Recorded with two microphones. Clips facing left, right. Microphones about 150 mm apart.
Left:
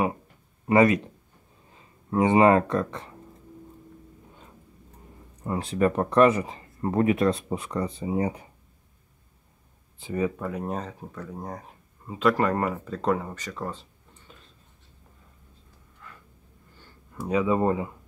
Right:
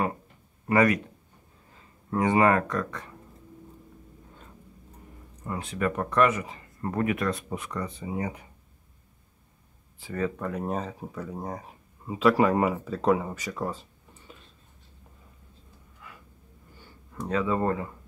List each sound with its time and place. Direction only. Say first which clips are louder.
0.7 s speech: left 3 dB; 25° left (ahead or behind)
5.4 s speech: left 5 dB; 30° left (ahead or behind)
9.9 s speech: left 3 dB; 15° left (ahead or behind); by 13.7 s 10° right (ahead or behind)
14.3 s a sound: right 2 dB; 5° right (ahead or behind)
16.0 s a sound: even; 10° right (ahead or behind)
17.1 s speech: left 3 dB; 10° left (ahead or behind)